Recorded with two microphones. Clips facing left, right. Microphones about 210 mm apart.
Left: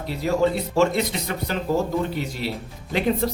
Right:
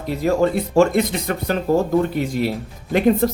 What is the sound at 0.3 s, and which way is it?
Speech, 50° right (ahead or behind).